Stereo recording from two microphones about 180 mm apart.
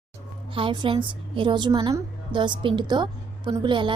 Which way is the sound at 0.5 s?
30° right (ahead or behind).